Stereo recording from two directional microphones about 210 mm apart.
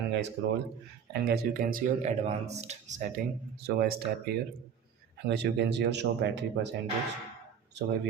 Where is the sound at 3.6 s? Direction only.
45° right (ahead or behind).